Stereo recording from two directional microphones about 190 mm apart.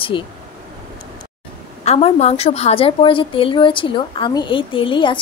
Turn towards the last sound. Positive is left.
turn(degrees=25)  # may be behind; listen again after turning